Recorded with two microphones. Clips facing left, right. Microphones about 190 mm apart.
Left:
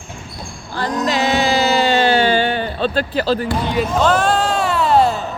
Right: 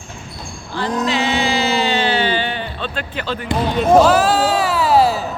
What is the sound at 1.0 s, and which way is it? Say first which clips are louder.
Music: left 3 dB; 40° left (ahead or behind).